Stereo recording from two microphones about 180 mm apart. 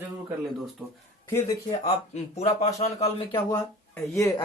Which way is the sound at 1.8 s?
40° left (ahead or behind).